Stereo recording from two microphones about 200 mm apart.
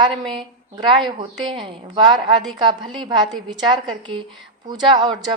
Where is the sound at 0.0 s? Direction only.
20° right (ahead or behind).